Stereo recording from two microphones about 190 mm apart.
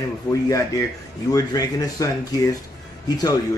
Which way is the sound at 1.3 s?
20° left (ahead or behind).